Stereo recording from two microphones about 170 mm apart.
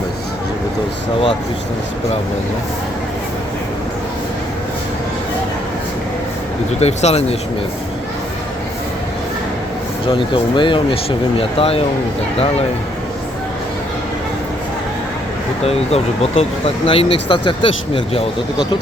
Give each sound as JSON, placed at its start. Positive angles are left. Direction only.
{"t": 6.7, "sound": "speech", "side_deg": 40}
{"t": 10.1, "sound": "speech", "side_deg": 30}
{"t": 15.6, "sound": "speech", "side_deg": 35}